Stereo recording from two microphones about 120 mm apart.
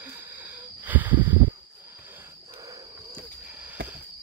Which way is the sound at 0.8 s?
15° right (ahead or behind).